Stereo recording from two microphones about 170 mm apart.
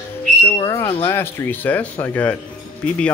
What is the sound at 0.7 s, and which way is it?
Smoke detector, 15° left (ahead or behind).